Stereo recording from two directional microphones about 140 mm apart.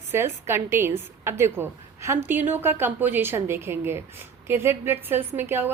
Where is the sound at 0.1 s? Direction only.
15° right (ahead or behind).